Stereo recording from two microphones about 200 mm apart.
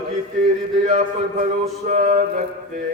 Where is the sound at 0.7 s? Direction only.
35° right (ahead or behind).